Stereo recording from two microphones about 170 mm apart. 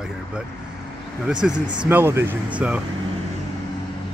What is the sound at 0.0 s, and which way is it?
Vehicle, 5° right (ahead or behind).